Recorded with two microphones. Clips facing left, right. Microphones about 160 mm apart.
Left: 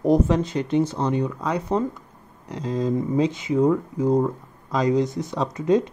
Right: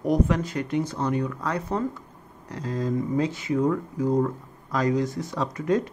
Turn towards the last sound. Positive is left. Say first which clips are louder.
# left 4 dB
turn(degrees=20)  # may be behind; listen again after turning